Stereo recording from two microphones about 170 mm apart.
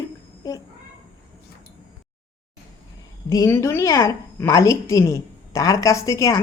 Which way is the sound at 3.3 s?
20° left (ahead or behind).